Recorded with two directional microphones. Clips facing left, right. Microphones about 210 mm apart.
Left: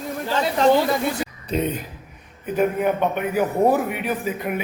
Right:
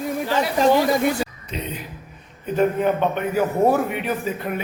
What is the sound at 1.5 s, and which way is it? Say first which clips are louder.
Speech: left 7 dB; 50° left (ahead or behind).